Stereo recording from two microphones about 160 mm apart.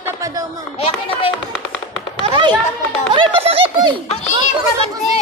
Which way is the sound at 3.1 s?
35° right (ahead or behind).